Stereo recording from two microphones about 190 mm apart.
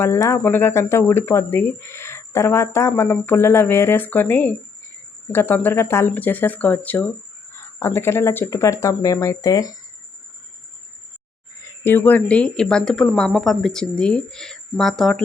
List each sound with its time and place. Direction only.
0.0 s speech: 15° left (ahead or behind)
11.8 s a woman's voice: 10° left (ahead or behind)